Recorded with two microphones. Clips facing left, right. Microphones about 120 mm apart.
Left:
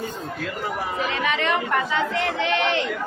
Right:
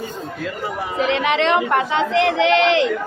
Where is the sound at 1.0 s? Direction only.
75° right (ahead or behind); by 2.9 s 90° right.